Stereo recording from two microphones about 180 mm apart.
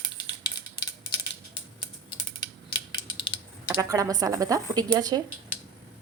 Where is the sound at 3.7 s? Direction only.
20° right (ahead or behind).